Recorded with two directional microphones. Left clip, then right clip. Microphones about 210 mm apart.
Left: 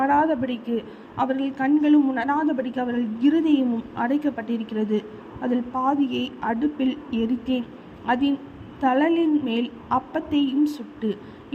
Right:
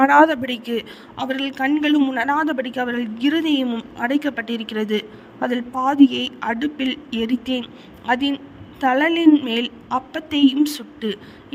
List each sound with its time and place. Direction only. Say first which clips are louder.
0.0 s a man's voice: right 7 dB; 60° right (ahead or behind)